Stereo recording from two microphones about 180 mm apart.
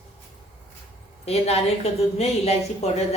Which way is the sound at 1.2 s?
35° left (ahead or behind).